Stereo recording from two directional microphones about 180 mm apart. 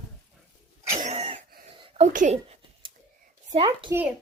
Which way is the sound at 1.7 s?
30° right (ahead or behind).